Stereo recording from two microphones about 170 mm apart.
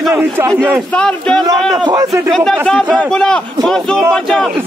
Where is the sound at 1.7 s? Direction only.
20° right (ahead or behind).